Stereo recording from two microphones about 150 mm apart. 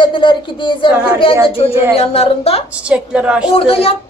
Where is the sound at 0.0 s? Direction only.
35° left (ahead or behind).